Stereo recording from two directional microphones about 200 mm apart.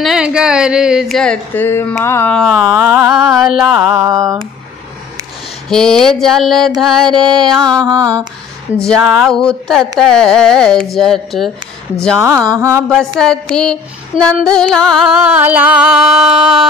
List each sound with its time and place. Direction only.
0.0 s female singing: 5° right (ahead or behind)
4.0 s mantra: 15° right (ahead or behind)
5.7 s female singing: 5° left (ahead or behind)
7.8 s mantra: 15° right (ahead or behind)
8.8 s female singing: centre (ahead or behind)
12.2 s mantra: 15° right (ahead or behind)
12.9 s female singing: 5° left (ahead or behind)